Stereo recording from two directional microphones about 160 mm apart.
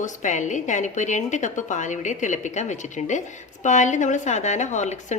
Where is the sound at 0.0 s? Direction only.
50° left (ahead or behind).